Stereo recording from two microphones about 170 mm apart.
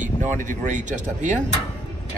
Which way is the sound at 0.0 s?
45° right (ahead or behind).